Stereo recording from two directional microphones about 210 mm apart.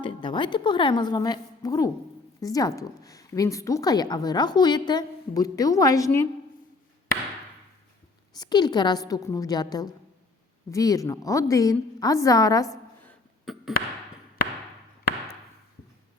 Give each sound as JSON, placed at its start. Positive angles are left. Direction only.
{"t": 0.0, "sound": "a woman's voice", "side_deg": 20}
{"t": 8.4, "sound": "a woman's voice", "side_deg": 20}
{"t": 13.4, "sound": "a sound", "side_deg": 0}